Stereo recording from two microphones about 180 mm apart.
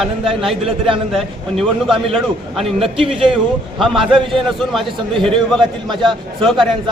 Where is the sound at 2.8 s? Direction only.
30° right (ahead or behind).